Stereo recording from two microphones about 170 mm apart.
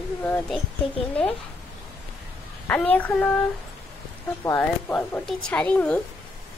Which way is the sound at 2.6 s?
10° left (ahead or behind).